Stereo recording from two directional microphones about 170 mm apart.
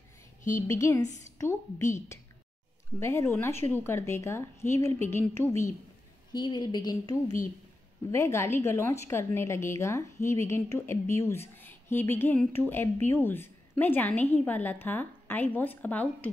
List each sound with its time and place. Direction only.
0.6 s a woman's voice: 15° left (ahead or behind)
3.0 s a woman's voice: 15° left (ahead or behind)